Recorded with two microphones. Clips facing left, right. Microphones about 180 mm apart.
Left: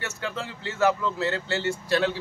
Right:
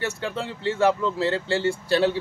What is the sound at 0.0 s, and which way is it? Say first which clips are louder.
Speech: right 4 dB; 30° right (ahead or behind).